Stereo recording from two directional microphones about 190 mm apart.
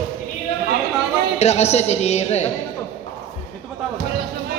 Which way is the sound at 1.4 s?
35° left (ahead or behind).